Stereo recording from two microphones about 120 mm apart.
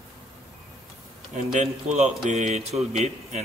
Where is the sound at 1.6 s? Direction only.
75° right (ahead or behind).